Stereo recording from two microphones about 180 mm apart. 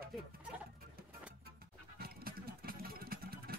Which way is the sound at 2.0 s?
55° right (ahead or behind).